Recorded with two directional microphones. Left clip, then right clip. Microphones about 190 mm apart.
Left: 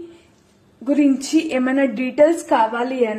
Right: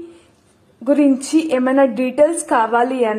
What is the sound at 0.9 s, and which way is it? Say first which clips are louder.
A woman's voice: right 3 dB; 10° right (ahead or behind).